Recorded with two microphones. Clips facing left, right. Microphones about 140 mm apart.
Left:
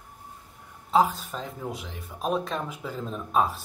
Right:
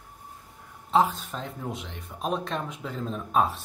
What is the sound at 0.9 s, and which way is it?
Speech, centre (ahead or behind).